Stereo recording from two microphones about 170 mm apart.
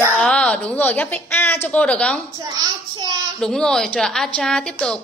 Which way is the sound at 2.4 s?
25° right (ahead or behind).